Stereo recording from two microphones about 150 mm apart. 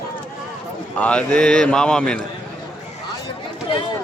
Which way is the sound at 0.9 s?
10° left (ahead or behind).